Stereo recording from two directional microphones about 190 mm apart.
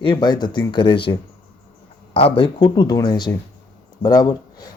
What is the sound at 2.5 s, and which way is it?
Speech, 20° left (ahead or behind).